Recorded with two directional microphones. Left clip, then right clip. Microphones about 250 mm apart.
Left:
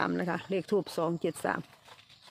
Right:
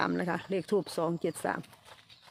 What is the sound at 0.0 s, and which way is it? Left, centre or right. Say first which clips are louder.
Speech: even; centre.